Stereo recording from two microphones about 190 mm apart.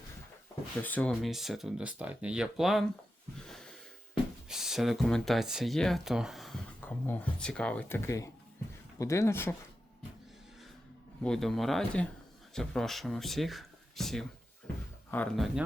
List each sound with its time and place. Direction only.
0.8 s speech: 10° left (ahead or behind)
4.4 s speech: centre (ahead or behind)
11.2 s speech: 5° left (ahead or behind)